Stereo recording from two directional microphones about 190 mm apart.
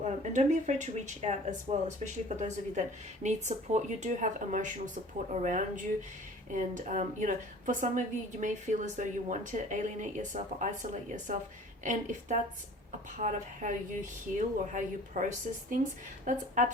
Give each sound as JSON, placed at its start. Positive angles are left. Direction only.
{"t": 0.0, "sound": "a woman's voice", "side_deg": -40}